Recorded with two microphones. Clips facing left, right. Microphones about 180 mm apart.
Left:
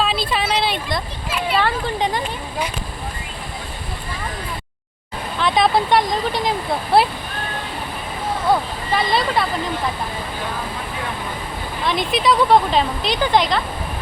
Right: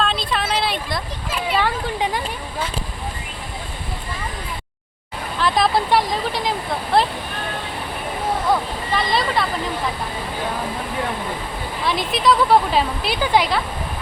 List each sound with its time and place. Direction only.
0.0 s a sound: 5° left (ahead or behind)
1.5 s speech: 10° right (ahead or behind)
5.4 s speech: centre (ahead or behind)
9.0 s speech: centre (ahead or behind)
11.9 s speech: centre (ahead or behind)